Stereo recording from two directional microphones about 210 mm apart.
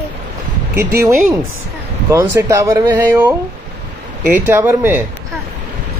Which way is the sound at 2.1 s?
15° right (ahead or behind).